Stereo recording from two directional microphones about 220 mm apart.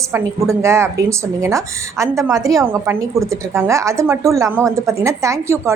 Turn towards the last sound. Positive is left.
turn(degrees=-10)  # may be behind; listen again after turning